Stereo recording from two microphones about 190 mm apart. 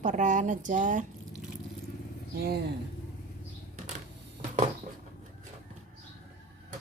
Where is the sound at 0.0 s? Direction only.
40° right (ahead or behind).